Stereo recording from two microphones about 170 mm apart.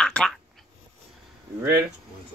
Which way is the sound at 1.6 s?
15° right (ahead or behind).